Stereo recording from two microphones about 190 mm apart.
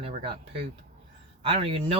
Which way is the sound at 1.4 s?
30° right (ahead or behind).